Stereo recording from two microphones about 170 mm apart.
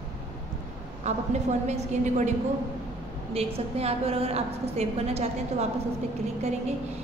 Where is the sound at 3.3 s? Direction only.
35° right (ahead or behind).